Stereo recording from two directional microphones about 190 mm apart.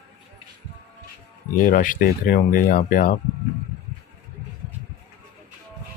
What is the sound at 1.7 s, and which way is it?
Speech, 45° left (ahead or behind).